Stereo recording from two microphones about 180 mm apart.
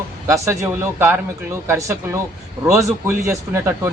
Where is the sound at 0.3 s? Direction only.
15° right (ahead or behind).